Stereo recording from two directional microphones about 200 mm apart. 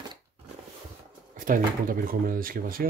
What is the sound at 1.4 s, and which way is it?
Speech, 45° right (ahead or behind).